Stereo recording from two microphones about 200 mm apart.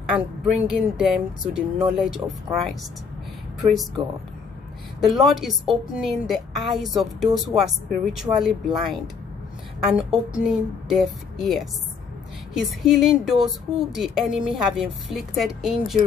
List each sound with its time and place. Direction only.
0.1 s a woman's voice: centre (ahead or behind)
5.0 s a woman's voice: centre (ahead or behind)